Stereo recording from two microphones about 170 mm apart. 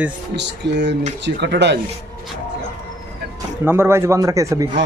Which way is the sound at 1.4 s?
90° right.